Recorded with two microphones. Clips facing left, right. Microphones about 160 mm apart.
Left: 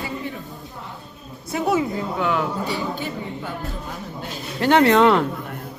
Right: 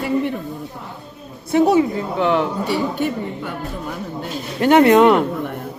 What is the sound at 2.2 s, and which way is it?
Speech, 30° right (ahead or behind).